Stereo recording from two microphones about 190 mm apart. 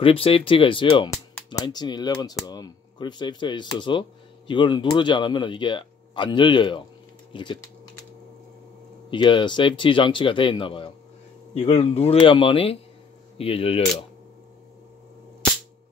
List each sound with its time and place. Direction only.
0.0 s speech: 30° left (ahead or behind)
9.1 s speech: 25° left (ahead or behind)